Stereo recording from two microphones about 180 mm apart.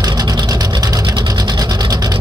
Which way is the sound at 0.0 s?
20° right (ahead or behind).